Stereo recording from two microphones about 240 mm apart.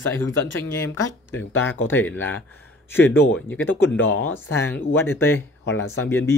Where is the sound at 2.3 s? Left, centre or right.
Left.